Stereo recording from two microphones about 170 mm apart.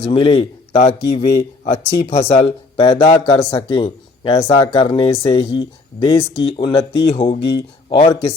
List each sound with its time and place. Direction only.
0.0 s a man's voice: 35° left (ahead or behind)
7.3 s speech: 75° left (ahead or behind)
7.9 s speech: 35° left (ahead or behind)